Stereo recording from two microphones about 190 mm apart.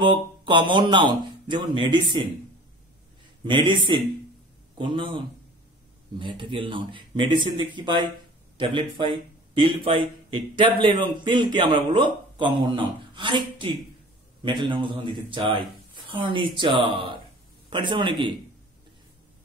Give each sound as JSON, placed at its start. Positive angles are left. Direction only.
{"t": 0.0, "sound": "a man's voice", "side_deg": -25}
{"t": 3.4, "sound": "a man's voice", "side_deg": -25}